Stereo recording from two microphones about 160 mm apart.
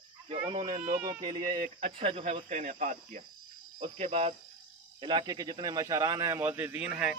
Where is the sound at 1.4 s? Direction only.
50° right (ahead or behind).